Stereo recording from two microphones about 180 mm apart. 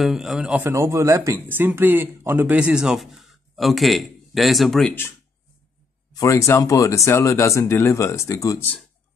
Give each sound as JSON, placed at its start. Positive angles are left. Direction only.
{"t": 0.0, "sound": "speech", "side_deg": 0}
{"t": 6.1, "sound": "speech", "side_deg": 15}